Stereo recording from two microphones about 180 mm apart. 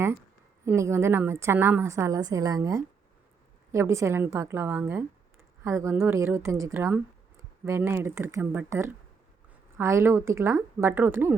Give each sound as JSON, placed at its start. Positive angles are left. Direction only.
{"t": 0.6, "sound": "speech", "side_deg": -15}